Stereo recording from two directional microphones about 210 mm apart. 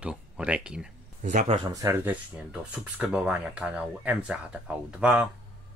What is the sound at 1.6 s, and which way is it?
Speech, 15° right (ahead or behind).